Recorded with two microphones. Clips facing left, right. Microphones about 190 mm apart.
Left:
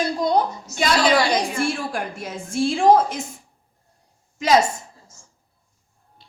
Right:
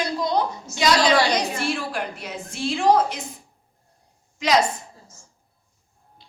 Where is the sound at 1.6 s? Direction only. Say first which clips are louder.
Left 2 dB; 45° left (ahead or behind).